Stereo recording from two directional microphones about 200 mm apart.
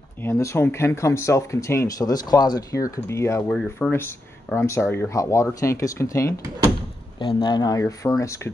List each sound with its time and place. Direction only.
0.2 s speech: 15° left (ahead or behind)